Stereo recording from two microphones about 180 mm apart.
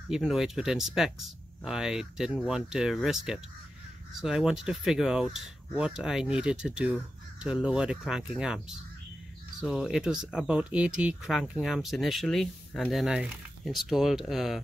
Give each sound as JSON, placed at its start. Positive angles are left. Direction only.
{"t": 0.1, "sound": "speech", "side_deg": -5}